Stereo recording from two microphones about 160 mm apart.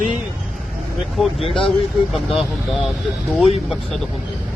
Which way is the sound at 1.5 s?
35° left (ahead or behind).